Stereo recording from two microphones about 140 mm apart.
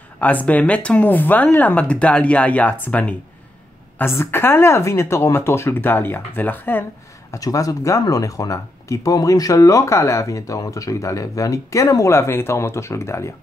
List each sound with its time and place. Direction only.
0.2 s speech: 10° left (ahead or behind)
7.3 s speech: 25° left (ahead or behind)